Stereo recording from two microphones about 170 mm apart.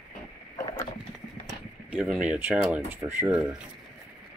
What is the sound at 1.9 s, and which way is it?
Speech, 5° right (ahead or behind).